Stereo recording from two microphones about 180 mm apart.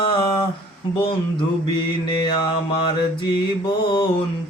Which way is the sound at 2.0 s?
25° left (ahead or behind).